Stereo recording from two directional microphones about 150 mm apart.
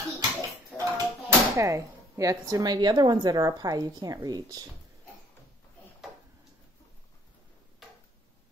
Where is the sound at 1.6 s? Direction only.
20° right (ahead or behind).